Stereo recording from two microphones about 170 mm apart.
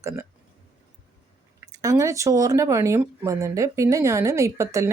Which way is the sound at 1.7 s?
20° right (ahead or behind).